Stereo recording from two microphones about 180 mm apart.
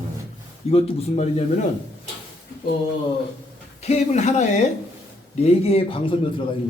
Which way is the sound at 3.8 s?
40° left (ahead or behind).